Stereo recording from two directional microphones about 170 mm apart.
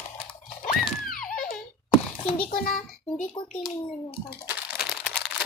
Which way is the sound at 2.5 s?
60° left (ahead or behind).